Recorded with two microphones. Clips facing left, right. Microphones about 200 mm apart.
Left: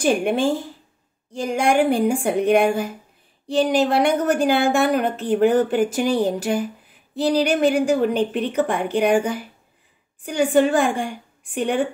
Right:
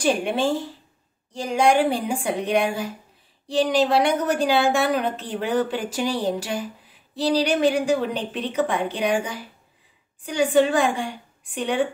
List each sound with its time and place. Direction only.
0.0 s a woman's voice: 50° left (ahead or behind)